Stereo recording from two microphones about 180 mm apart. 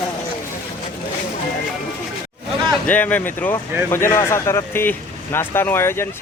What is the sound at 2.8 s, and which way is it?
Speech, 10° left (ahead or behind).